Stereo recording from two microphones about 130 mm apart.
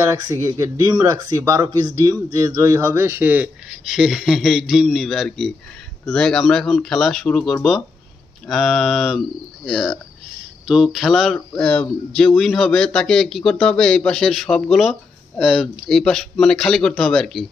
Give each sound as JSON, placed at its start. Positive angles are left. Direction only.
{"t": 0.0, "sound": "speech", "side_deg": -20}
{"t": 3.8, "sound": "speech", "side_deg": -5}